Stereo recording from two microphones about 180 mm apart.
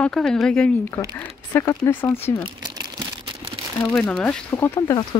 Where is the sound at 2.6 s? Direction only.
25° right (ahead or behind).